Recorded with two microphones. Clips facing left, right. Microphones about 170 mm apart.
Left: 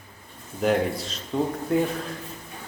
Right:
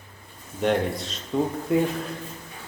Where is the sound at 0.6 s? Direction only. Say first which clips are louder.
Left 1 dB; centre (ahead or behind).